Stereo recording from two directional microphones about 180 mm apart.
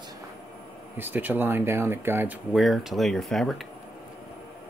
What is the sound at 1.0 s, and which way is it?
Speech, 10° right (ahead or behind).